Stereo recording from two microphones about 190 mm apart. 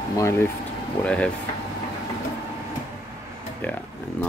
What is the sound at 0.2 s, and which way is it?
Speech, 15° left (ahead or behind).